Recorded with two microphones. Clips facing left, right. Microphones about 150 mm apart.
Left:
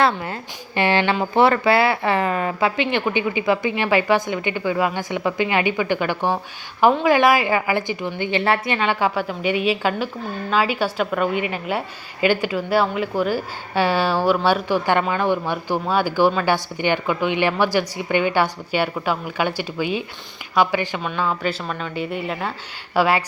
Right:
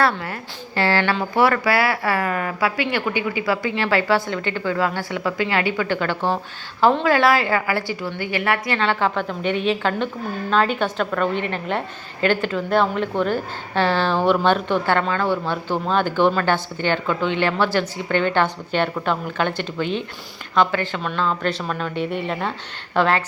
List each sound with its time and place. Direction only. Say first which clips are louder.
0.0 s a woman's voice: left 1 dB; 20° left (ahead or behind)